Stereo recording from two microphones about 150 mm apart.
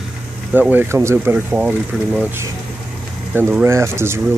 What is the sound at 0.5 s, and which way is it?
Speech, 10° right (ahead or behind).